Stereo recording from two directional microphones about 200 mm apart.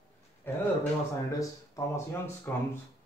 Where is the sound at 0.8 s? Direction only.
15° left (ahead or behind).